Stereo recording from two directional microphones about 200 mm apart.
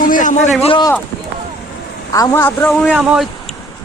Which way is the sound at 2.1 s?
15° left (ahead or behind).